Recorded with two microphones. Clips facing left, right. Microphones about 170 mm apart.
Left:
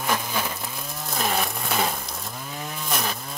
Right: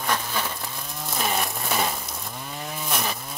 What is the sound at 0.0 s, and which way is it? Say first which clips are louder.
Vehicle: left 1 dB; 10° left (ahead or behind).